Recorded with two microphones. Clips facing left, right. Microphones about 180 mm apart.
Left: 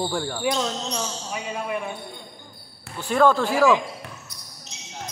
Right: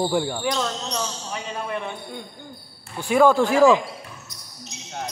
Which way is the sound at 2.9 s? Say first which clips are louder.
Right 2 dB; 10° right (ahead or behind).